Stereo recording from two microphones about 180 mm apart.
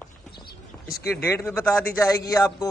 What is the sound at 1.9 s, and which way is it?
Speech, 20° left (ahead or behind).